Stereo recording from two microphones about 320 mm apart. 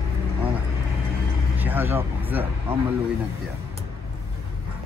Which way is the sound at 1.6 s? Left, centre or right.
Centre.